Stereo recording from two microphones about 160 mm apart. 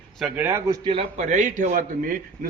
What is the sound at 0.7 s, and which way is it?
Speech, 30° right (ahead or behind).